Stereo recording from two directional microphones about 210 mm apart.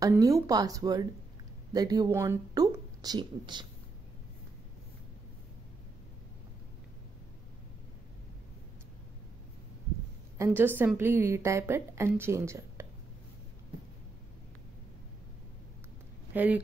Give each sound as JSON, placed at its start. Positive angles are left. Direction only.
{"t": 0.0, "sound": "a woman's voice", "side_deg": -15}
{"t": 10.3, "sound": "a woman's voice", "side_deg": -10}
{"t": 16.3, "sound": "a woman's voice", "side_deg": -5}